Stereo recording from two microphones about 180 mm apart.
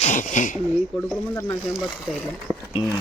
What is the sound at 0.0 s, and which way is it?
Speech, 45° left (ahead or behind).